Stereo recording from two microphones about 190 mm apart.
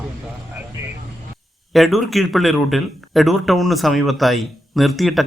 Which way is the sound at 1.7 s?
Centre (ahead or behind).